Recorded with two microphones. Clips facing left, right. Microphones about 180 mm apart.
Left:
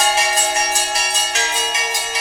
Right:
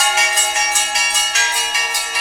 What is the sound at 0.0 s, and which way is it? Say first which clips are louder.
Bell: left 2 dB; 30° left (ahead or behind).